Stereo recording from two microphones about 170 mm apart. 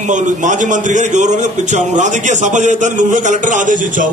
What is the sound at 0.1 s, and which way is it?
A man's voice, 45° right (ahead or behind).